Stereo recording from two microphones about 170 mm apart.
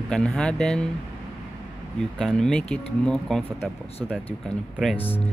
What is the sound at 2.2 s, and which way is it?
Speech, centre (ahead or behind).